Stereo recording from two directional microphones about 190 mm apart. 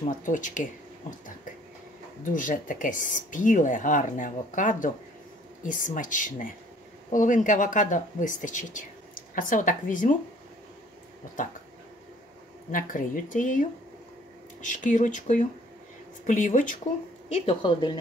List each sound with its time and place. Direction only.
0.2 s speech: 40° left (ahead or behind)
2.3 s speech: 45° left (ahead or behind)
12.7 s speech: 45° left (ahead or behind)
17.3 s a woman's voice: 25° left (ahead or behind)